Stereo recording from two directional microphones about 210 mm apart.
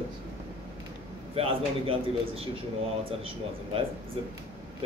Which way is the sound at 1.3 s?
25° right (ahead or behind).